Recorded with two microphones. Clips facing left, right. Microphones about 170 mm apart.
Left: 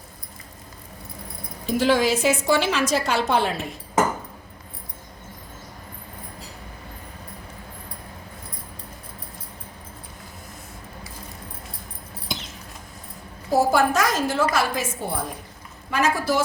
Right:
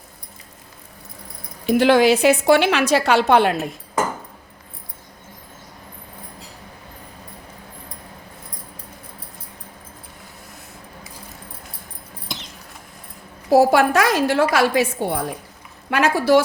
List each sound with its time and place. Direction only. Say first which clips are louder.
1.6 s a woman's voice: right 6 dB; 65° right (ahead or behind)
12.3 s a sound: left 2 dB; centre (ahead or behind)
13.5 s a woman's voice: right 5 dB; 70° right (ahead or behind)